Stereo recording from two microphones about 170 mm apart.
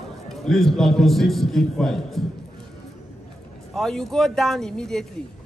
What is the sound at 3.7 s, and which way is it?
A man's voice, centre (ahead or behind).